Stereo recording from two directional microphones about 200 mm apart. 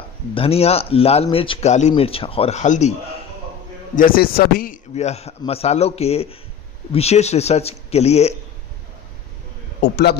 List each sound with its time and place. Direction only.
0.3 s speech: 30° left (ahead or behind)
3.9 s a man's voice: 45° left (ahead or behind)
4.9 s a man's voice: 35° left (ahead or behind)
9.8 s a man's voice: 55° left (ahead or behind)